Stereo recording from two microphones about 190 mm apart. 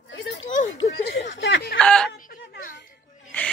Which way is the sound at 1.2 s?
75° left (ahead or behind).